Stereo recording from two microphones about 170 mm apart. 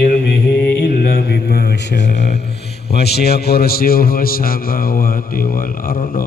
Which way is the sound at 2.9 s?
70° left (ahead or behind).